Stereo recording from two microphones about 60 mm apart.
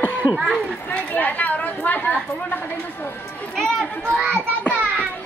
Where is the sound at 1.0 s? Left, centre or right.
Left.